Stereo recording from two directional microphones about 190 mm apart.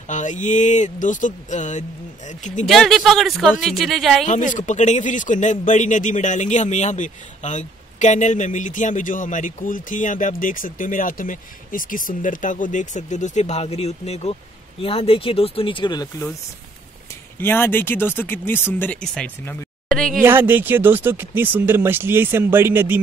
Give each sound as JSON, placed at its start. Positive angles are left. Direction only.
{"t": 0.1, "sound": "speech", "side_deg": 40}
{"t": 2.6, "sound": "speech", "side_deg": 0}
{"t": 4.3, "sound": "speech", "side_deg": 40}
{"t": 17.4, "sound": "speech", "side_deg": 10}
{"t": 20.2, "sound": "speech", "side_deg": -10}